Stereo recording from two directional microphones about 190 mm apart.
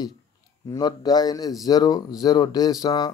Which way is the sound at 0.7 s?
20° left (ahead or behind).